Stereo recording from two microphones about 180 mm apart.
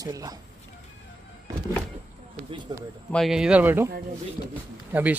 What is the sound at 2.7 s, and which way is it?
Speech, 20° right (ahead or behind).